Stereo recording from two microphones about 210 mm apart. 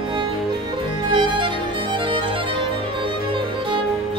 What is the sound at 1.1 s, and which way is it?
Music, 20° right (ahead or behind).